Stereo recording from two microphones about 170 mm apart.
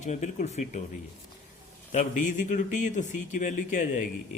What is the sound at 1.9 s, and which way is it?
Speech, 45° left (ahead or behind).